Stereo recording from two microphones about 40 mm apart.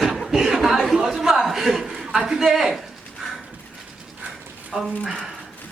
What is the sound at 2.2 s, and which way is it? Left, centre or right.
Speech, centre.